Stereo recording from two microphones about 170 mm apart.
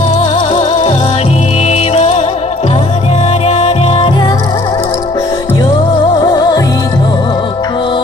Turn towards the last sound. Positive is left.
turn(degrees=30)  # may be behind; listen again after turning